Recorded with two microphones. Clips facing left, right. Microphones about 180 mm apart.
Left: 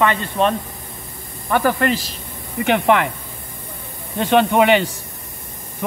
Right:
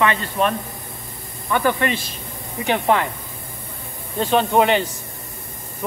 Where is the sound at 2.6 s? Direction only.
65° left (ahead or behind).